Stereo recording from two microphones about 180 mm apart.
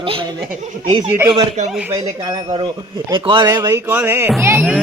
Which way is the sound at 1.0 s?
10° right (ahead or behind).